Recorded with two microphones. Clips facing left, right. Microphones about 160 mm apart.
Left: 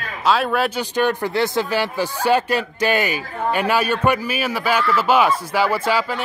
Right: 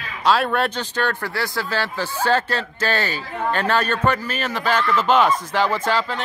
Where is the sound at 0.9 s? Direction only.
15° left (ahead or behind).